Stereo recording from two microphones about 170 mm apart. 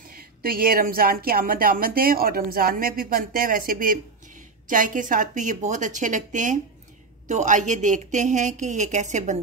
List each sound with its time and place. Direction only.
0.1 s a woman's voice: 60° right (ahead or behind)